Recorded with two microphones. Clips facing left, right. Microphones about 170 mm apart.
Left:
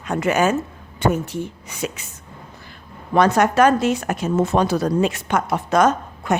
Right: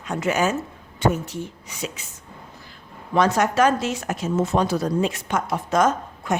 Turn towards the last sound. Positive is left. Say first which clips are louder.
# left 3 dB
turn(degrees=70)  # may be behind; listen again after turning